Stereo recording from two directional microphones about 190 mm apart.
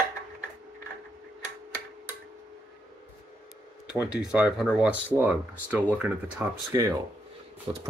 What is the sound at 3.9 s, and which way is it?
Speech, 5° right (ahead or behind).